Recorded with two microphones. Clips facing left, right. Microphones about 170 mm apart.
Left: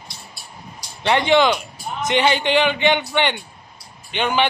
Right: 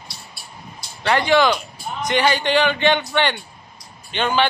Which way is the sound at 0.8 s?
20° left (ahead or behind).